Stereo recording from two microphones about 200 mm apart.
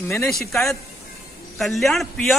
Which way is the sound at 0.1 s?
5° left (ahead or behind).